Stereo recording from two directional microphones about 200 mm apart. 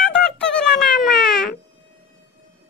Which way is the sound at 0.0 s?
5° left (ahead or behind).